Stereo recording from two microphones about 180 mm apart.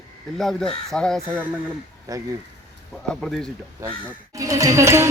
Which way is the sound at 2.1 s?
20° right (ahead or behind).